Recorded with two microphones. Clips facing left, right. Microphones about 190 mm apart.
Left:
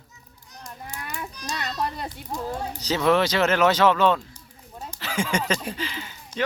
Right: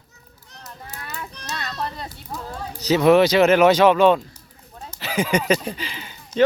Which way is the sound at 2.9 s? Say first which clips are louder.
Right 7 dB; 15° right (ahead or behind).